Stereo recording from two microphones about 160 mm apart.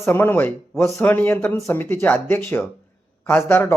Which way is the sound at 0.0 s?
15° left (ahead or behind).